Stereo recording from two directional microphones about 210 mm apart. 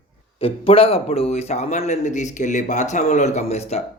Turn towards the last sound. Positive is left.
turn(degrees=30)  # may be behind; listen again after turning